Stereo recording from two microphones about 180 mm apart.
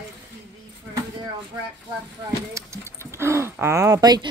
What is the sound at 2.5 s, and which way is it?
Speech, 15° right (ahead or behind).